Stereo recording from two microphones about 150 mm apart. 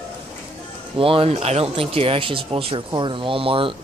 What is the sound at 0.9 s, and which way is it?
Speech, 35° right (ahead or behind).